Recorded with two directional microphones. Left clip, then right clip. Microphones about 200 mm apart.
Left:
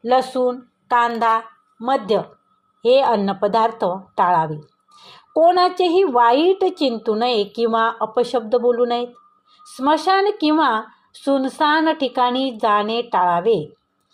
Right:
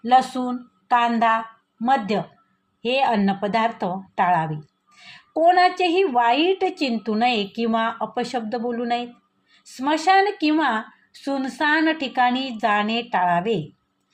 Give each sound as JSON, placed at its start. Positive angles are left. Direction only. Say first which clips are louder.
{"t": 0.0, "sound": "a woman's voice", "louder": "left 1 dB", "side_deg": 15}